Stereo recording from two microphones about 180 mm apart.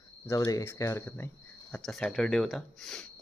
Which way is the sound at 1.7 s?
5° left (ahead or behind).